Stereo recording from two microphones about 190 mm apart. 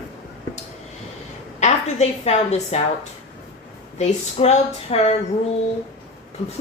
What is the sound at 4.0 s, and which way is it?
A woman's voice, 35° left (ahead or behind).